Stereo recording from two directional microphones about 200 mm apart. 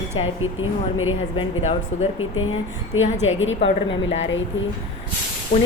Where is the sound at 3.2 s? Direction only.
75° left (ahead or behind).